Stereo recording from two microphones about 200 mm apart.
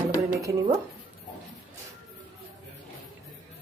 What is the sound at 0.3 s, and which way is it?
Speech, 15° right (ahead or behind).